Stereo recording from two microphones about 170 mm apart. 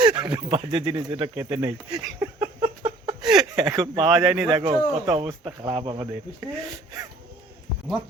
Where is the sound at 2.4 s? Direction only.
30° right (ahead or behind).